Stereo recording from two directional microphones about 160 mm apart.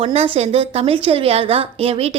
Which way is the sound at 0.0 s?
40° right (ahead or behind).